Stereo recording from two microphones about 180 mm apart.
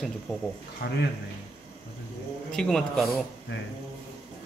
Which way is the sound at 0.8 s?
70° left (ahead or behind).